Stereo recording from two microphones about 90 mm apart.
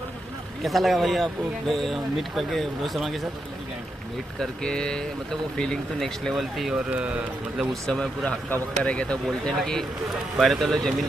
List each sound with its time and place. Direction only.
0.6 s speech: centre (ahead or behind)
4.4 s speech: 10° left (ahead or behind)
6.7 s speech: 15° right (ahead or behind)
7.8 s speech: 5° left (ahead or behind)